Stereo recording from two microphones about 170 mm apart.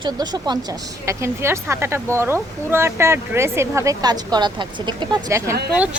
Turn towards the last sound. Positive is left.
turn(degrees=-10)  # may be behind; listen again after turning